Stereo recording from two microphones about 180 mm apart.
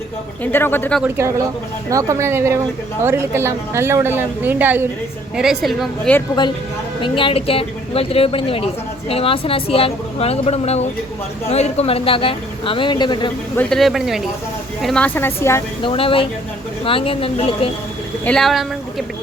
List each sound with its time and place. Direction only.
0.4 s speech: 10° left (ahead or behind)
1.0 s a woman's voice: 15° right (ahead or behind); by 6.2 s 5° left (ahead or behind)
7.0 s speech: 30° left (ahead or behind)
13.6 s speech: centre (ahead or behind)
15.8 s speech: 30° left (ahead or behind)
18.3 s a woman's voice: centre (ahead or behind)